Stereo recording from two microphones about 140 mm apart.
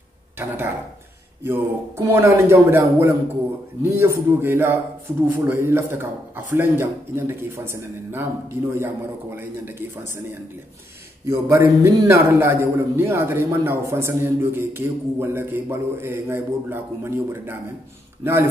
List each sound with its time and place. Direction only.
1.4 s a man's voice: 15° right (ahead or behind)
11.2 s a man's voice: 20° right (ahead or behind)